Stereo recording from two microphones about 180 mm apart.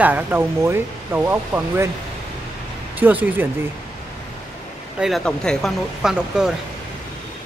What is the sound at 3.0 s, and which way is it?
Speech, 10° right (ahead or behind).